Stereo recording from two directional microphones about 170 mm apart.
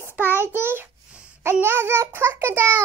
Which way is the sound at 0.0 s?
10° right (ahead or behind).